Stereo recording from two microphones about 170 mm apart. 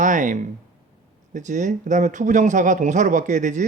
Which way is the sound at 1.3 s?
45° right (ahead or behind).